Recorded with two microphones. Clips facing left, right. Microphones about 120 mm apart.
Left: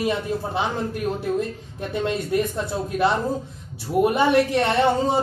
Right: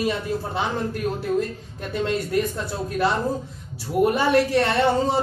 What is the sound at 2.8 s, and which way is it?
Speech, 20° left (ahead or behind).